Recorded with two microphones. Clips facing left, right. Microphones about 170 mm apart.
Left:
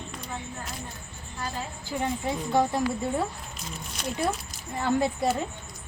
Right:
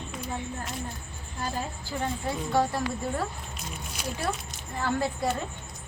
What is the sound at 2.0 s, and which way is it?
Speech, 15° left (ahead or behind).